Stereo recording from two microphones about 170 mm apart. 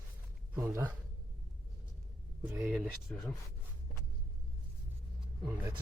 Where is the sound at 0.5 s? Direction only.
10° right (ahead or behind).